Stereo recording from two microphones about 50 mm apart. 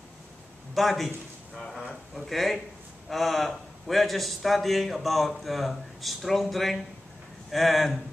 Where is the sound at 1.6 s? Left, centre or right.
Centre.